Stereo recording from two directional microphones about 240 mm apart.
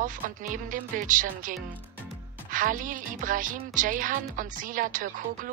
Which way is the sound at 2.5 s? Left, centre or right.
Right.